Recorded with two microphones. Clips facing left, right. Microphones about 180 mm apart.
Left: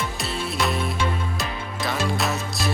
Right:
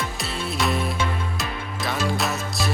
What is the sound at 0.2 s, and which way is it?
Music, centre (ahead or behind).